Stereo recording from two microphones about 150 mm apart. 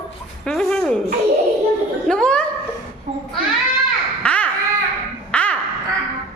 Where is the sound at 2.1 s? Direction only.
5° left (ahead or behind).